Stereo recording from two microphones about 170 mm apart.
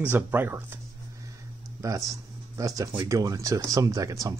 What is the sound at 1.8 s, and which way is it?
Speech, 20° right (ahead or behind).